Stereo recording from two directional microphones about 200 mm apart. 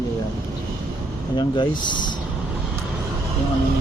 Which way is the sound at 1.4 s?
20° left (ahead or behind).